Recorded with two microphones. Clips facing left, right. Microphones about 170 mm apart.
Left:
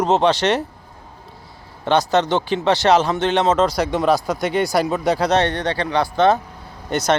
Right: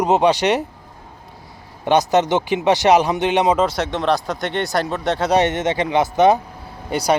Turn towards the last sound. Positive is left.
turn(degrees=-10)  # may be behind; listen again after turning